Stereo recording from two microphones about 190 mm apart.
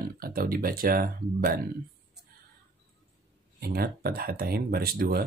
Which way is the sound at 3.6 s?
55° right (ahead or behind).